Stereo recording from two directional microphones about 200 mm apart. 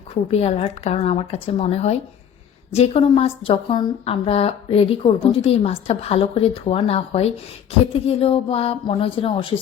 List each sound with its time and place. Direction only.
0.1 s a woman's voice: 30° left (ahead or behind)